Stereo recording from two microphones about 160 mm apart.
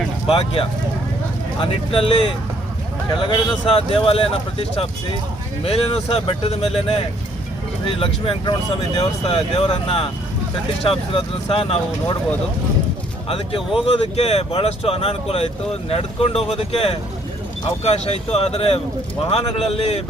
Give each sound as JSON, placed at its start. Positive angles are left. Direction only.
{"t": 0.3, "sound": "speech", "side_deg": 35}
{"t": 5.6, "sound": "speech", "side_deg": 35}
{"t": 13.2, "sound": "speech", "side_deg": 35}